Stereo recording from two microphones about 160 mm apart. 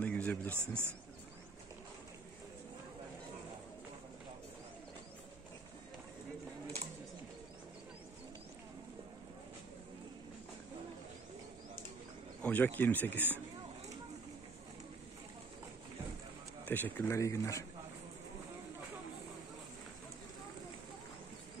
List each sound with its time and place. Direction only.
0.0 s a sound: 10° left (ahead or behind)
0.5 s a man's voice: 15° right (ahead or behind)
12.4 s speech: 10° left (ahead or behind)
16.6 s a man's voice: 10° left (ahead or behind)